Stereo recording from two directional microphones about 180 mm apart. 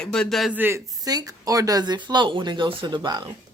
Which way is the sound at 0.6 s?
15° right (ahead or behind).